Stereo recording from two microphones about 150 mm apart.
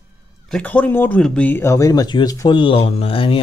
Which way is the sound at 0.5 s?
10° left (ahead or behind).